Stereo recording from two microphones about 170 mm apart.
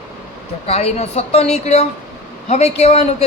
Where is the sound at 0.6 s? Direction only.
40° left (ahead or behind).